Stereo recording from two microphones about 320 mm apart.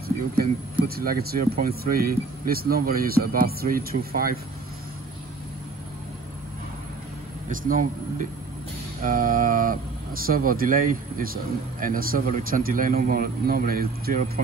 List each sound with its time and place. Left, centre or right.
0.4 s speech: right
7.4 s speech: right